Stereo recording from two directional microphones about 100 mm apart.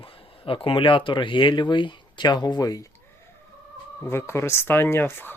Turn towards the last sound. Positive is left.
turn(degrees=20)  # may be behind; listen again after turning